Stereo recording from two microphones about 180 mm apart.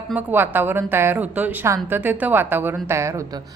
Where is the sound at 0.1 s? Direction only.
10° right (ahead or behind).